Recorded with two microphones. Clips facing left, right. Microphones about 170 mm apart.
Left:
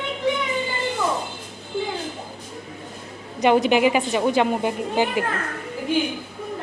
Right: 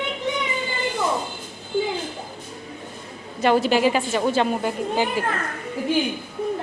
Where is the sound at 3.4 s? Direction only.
20° left (ahead or behind).